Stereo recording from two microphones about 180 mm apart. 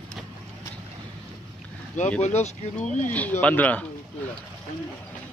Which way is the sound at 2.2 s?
40° left (ahead or behind).